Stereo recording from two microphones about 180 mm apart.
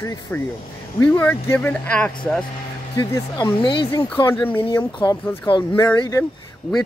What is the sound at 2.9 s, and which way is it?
Speech, 25° left (ahead or behind).